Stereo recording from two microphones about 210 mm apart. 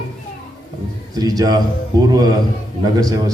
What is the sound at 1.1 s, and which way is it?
Speech, 20° right (ahead or behind).